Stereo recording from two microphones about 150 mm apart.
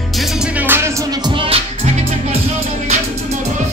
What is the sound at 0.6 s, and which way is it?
Music, 15° right (ahead or behind).